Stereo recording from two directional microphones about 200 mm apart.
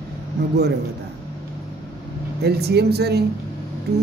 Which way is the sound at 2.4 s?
55° right (ahead or behind).